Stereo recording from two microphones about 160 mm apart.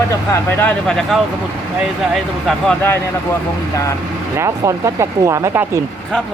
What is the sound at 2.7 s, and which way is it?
Speech, 15° left (ahead or behind).